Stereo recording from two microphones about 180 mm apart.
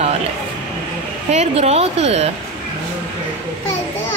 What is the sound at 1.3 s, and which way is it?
A woman's voice, 35° right (ahead or behind).